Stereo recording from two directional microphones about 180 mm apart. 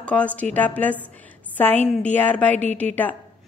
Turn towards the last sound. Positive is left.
turn(degrees=10)  # may be behind; listen again after turning